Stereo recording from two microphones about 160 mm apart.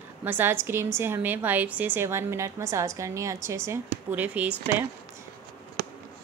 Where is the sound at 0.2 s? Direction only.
10° right (ahead or behind).